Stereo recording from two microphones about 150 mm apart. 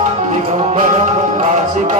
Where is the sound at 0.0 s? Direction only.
50° right (ahead or behind).